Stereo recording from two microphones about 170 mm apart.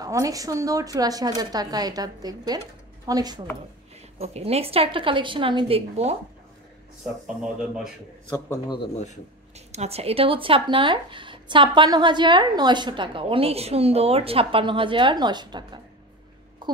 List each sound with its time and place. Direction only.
0.0 s speech: 20° right (ahead or behind)
4.2 s a woman's voice: 40° right (ahead or behind)
8.6 s speech: 30° left (ahead or behind)
9.7 s speech: 40° right (ahead or behind)